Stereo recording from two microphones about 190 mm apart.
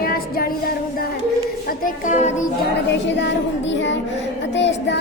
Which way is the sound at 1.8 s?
40° left (ahead or behind).